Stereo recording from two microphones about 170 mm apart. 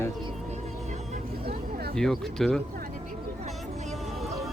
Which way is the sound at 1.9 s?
5° left (ahead or behind).